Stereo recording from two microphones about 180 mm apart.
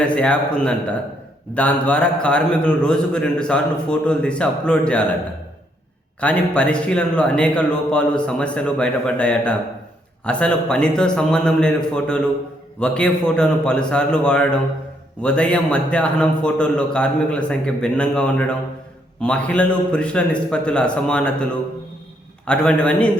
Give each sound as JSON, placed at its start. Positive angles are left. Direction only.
{"t": 0.0, "sound": "a man's voice", "side_deg": 5}
{"t": 6.1, "sound": "a man's voice", "side_deg": 5}
{"t": 22.4, "sound": "a man's voice", "side_deg": 5}